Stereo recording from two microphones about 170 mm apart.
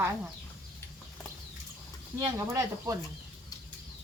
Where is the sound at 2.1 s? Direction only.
20° right (ahead or behind).